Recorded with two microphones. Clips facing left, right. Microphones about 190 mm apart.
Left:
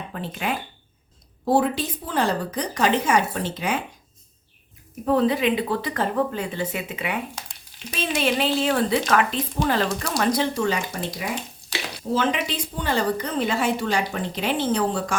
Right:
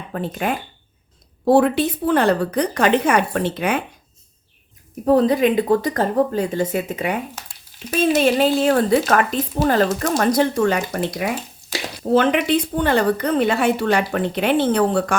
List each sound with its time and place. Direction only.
0.1 s speech: 50° right (ahead or behind)
1.5 s a woman's voice: 65° right (ahead or behind)
5.0 s a woman's voice: 40° right (ahead or behind); by 15.1 s 60° right (ahead or behind)